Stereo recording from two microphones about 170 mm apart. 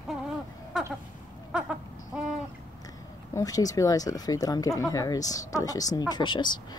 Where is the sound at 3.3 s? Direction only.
20° left (ahead or behind).